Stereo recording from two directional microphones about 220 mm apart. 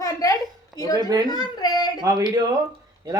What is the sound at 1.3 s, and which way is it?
Speech, 20° left (ahead or behind).